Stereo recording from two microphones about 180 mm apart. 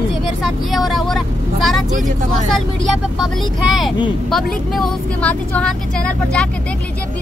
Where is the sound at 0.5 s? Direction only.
Centre (ahead or behind).